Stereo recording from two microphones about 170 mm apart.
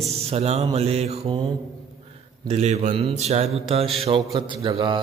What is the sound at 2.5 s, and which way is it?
Speech, 40° right (ahead or behind).